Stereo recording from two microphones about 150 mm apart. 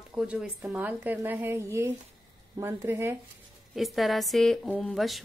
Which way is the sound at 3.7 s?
Centre (ahead or behind).